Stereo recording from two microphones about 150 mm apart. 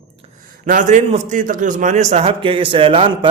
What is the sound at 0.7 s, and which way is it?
A man's voice, 55° right (ahead or behind).